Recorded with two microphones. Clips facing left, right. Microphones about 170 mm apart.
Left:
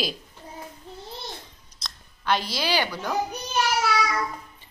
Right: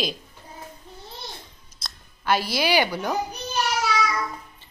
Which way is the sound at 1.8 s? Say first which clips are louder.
Right 1 dB; 5° right (ahead or behind).